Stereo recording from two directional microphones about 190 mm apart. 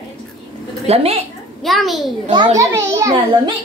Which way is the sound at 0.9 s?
30° right (ahead or behind).